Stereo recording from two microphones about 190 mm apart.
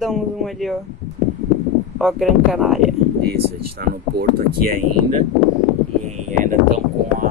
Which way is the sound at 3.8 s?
50° right (ahead or behind).